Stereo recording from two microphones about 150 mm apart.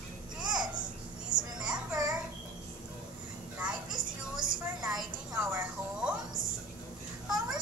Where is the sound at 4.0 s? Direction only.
65° right (ahead or behind).